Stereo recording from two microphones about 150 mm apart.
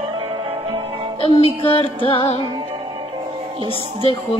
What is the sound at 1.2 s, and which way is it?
Music, 40° left (ahead or behind).